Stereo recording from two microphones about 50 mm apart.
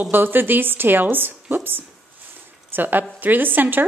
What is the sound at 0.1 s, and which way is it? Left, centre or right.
A woman's voice, right.